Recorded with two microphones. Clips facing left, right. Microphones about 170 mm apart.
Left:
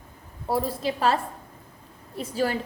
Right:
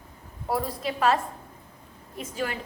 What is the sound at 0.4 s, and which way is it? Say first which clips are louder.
A woman's voice: left 3 dB; 30° left (ahead or behind).